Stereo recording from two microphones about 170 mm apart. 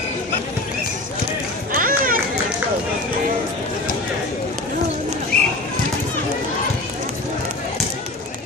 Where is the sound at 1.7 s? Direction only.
55° right (ahead or behind).